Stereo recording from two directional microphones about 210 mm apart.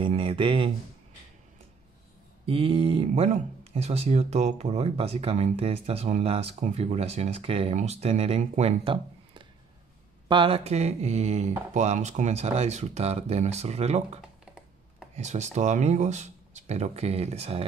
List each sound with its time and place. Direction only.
0.0 s speech: 25° right (ahead or behind)
2.4 s speech: 25° right (ahead or behind)
14.4 s computer keyboard: centre (ahead or behind)
15.1 s speech: 35° right (ahead or behind)